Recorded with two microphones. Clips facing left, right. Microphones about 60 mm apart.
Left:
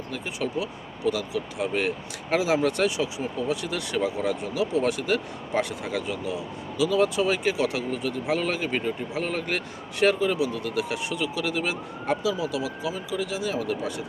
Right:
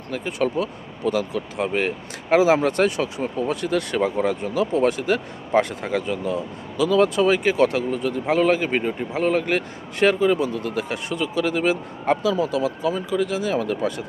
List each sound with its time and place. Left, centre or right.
0.1 s speech: right